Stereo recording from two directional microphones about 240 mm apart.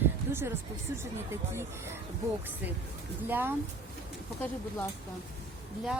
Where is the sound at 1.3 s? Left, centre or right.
Centre.